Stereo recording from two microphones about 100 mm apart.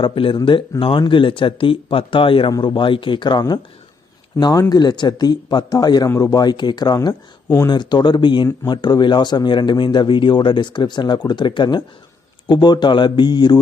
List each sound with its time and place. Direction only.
0.0 s speech: 60° left (ahead or behind); by 7.2 s 45° left (ahead or behind)
7.4 s speech: 25° left (ahead or behind)
7.7 s speech: 45° left (ahead or behind)